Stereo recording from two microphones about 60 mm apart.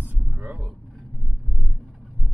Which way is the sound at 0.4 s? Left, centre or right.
Right.